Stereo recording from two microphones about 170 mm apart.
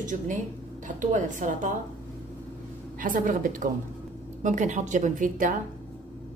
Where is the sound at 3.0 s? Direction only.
50° right (ahead or behind).